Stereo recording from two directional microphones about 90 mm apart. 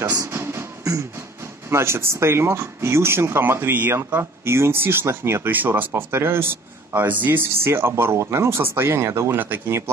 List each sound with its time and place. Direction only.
0.0 s music: 40° right (ahead or behind)
1.7 s speech: 30° right (ahead or behind)